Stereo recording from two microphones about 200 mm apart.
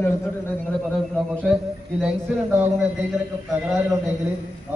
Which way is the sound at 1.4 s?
Centre (ahead or behind).